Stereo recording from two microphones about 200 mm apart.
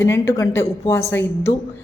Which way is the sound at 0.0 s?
10° left (ahead or behind).